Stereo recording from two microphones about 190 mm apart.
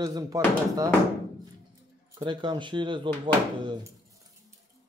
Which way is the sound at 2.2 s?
25° right (ahead or behind).